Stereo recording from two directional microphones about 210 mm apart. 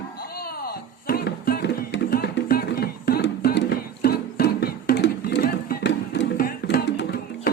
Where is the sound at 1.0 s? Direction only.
45° left (ahead or behind).